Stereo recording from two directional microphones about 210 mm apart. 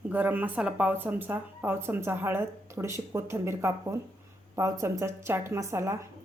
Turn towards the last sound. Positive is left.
turn(degrees=-15)  # may be behind; listen again after turning